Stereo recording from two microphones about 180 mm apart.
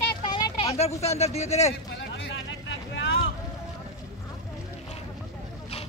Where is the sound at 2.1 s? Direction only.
90° left.